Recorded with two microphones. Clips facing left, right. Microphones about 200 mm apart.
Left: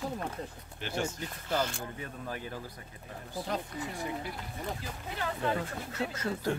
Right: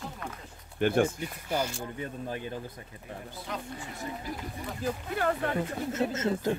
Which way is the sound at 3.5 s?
35° left (ahead or behind).